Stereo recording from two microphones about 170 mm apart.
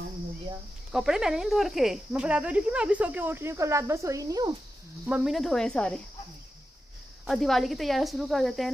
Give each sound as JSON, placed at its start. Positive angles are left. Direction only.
{"t": 0.9, "sound": "speech", "side_deg": -5}
{"t": 5.0, "sound": "speech", "side_deg": -5}
{"t": 7.2, "sound": "speech", "side_deg": 0}